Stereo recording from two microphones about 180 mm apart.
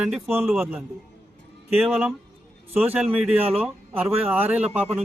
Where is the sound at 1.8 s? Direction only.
5° right (ahead or behind).